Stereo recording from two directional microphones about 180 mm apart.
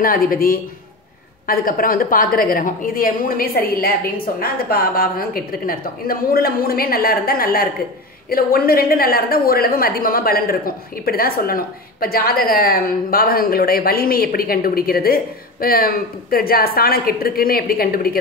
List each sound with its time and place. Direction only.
0.0 s a woman's voice: 50° left (ahead or behind)